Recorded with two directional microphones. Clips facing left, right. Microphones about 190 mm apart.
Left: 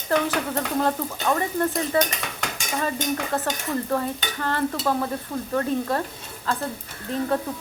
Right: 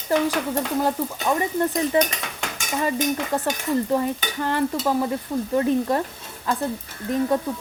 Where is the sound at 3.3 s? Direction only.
15° right (ahead or behind).